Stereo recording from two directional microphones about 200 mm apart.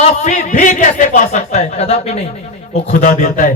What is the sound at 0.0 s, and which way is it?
A man's voice, 35° left (ahead or behind).